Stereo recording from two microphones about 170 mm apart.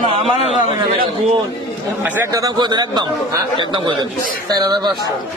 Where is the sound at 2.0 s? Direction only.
15° right (ahead or behind).